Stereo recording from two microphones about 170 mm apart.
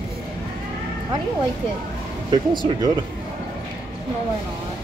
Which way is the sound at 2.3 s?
25° right (ahead or behind).